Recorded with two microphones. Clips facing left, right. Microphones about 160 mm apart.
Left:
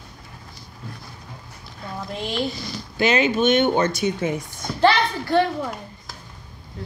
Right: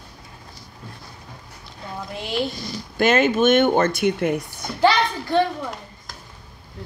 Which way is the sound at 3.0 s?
50° right (ahead or behind).